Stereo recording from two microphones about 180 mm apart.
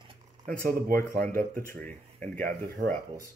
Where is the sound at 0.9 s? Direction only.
15° left (ahead or behind).